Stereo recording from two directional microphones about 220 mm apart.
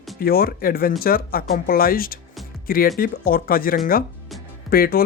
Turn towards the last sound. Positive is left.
turn(degrees=40)  # may be behind; listen again after turning